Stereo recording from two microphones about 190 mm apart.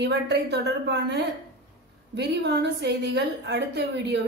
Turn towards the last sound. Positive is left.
turn(degrees=-60)  # may be behind; listen again after turning